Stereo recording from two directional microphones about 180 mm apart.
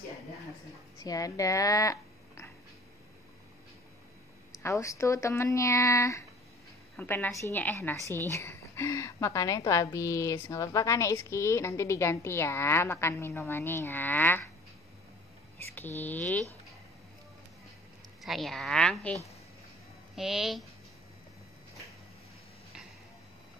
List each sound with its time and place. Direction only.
0.9 s speech: 20° left (ahead or behind)
4.6 s a woman's voice: 15° left (ahead or behind)
16.0 s a woman's voice: 10° left (ahead or behind)
18.2 s a woman's voice: centre (ahead or behind)
20.2 s a woman's voice: centre (ahead or behind)